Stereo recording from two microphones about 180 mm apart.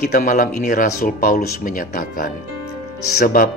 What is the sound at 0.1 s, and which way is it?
Speech, 50° left (ahead or behind).